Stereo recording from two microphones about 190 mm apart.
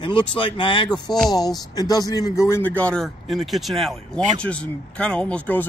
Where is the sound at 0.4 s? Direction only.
25° left (ahead or behind).